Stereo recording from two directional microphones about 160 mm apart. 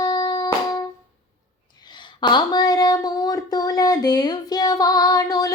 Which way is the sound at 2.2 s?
25° left (ahead or behind).